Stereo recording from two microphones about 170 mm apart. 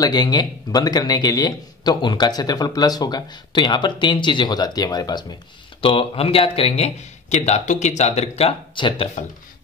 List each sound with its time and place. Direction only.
0.0 s a man's voice: 25° left (ahead or behind)